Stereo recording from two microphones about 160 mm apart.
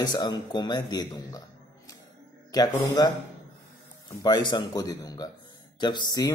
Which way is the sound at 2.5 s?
25° left (ahead or behind).